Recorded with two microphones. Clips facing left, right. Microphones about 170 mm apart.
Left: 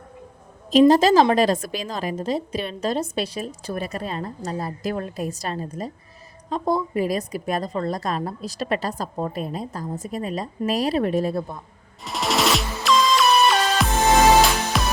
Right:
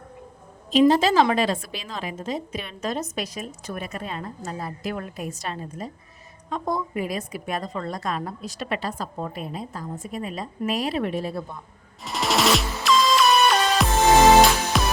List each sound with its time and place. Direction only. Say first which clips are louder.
0.7 s a woman's voice: left 3 dB; 40° left (ahead or behind)
12.0 s music: even; centre (ahead or behind)